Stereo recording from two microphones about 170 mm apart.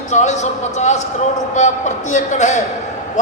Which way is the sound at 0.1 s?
45° left (ahead or behind).